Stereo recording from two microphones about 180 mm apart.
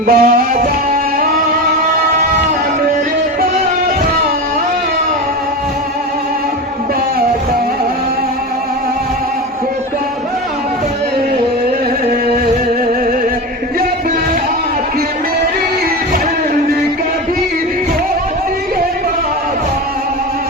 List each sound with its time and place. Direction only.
0.1 s music: 55° right (ahead or behind)